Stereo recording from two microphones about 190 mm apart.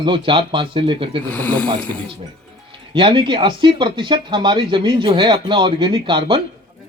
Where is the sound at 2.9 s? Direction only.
25° right (ahead or behind).